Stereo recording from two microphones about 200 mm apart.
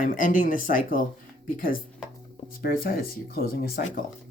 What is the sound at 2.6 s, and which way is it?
Speech, 50° left (ahead or behind).